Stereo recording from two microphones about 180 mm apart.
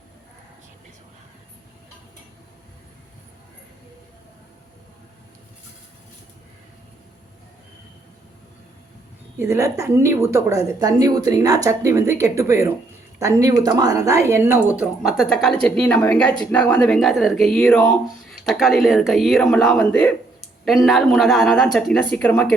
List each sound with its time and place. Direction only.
9.4 s speech: 15° right (ahead or behind); by 22.5 s 10° left (ahead or behind)